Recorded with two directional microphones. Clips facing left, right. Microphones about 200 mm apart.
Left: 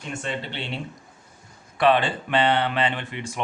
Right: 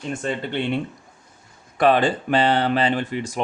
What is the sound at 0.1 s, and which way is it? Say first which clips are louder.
Speech: right 5 dB; 45° right (ahead or behind).